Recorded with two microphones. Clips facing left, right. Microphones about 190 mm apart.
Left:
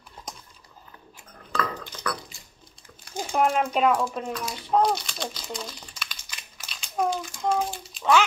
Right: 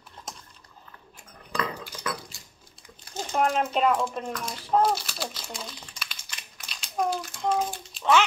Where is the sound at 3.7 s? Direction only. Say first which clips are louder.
Left 1 dB; centre (ahead or behind).